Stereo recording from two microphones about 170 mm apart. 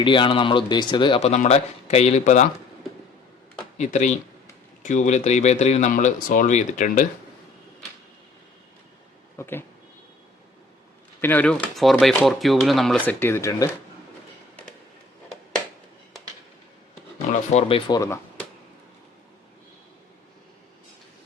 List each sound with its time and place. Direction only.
0.0 s speech: 30° left (ahead or behind); by 2.5 s 45° left (ahead or behind)
3.8 s speech: 40° left (ahead or behind)
9.4 s speech: 15° left (ahead or behind)
11.2 s speech: 10° left (ahead or behind)
13.1 s speech: 15° left (ahead or behind)
17.5 s speech: 35° left (ahead or behind); by 18.2 s 20° left (ahead or behind)